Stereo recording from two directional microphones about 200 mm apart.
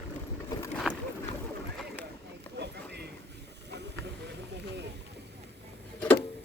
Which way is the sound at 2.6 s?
55° right (ahead or behind).